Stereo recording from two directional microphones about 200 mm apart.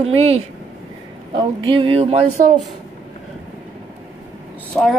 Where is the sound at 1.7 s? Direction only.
25° right (ahead or behind).